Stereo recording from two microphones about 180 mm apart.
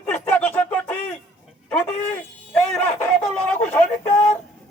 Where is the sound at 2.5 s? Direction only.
5° left (ahead or behind).